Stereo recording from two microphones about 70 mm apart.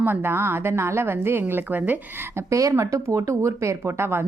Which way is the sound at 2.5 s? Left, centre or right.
Right.